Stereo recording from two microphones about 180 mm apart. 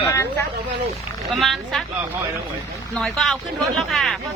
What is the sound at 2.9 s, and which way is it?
Speech, centre (ahead or behind).